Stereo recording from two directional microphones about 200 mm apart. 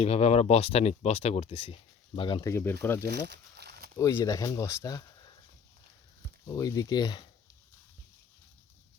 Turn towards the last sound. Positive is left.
turn(degrees=20)  # may be behind; listen again after turning